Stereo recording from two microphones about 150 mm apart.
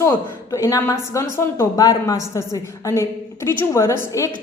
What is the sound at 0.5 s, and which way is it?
Speech, 20° left (ahead or behind).